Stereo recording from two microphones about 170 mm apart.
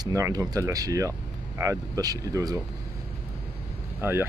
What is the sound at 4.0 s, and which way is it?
Speech, 15° right (ahead or behind).